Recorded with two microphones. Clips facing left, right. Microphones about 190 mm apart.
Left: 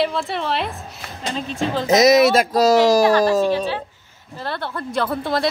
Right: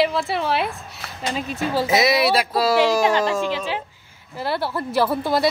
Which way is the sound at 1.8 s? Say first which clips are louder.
Left 7 dB; 40° left (ahead or behind).